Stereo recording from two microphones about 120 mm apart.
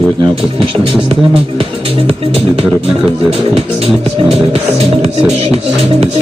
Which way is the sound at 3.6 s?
55° right (ahead or behind).